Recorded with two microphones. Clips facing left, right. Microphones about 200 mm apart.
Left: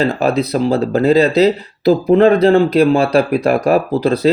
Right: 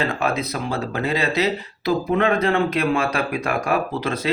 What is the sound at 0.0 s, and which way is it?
Speech, 35° left (ahead or behind).